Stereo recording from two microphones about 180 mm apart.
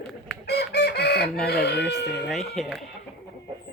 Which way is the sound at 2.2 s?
Centre (ahead or behind).